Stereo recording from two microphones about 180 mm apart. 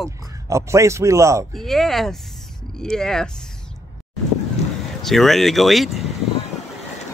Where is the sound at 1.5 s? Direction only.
Centre (ahead or behind).